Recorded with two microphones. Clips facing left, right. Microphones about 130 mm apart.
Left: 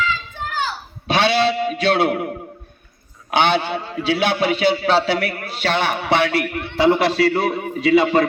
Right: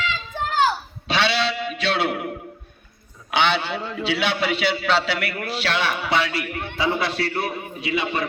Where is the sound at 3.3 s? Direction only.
45° left (ahead or behind).